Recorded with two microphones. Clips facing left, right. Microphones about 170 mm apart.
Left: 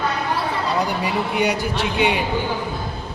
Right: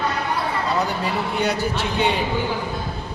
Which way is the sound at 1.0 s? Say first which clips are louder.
Left 2 dB; 15° left (ahead or behind).